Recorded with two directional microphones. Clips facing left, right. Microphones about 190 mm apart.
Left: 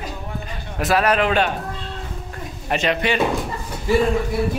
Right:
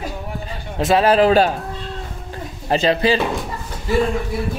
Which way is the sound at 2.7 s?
30° right (ahead or behind).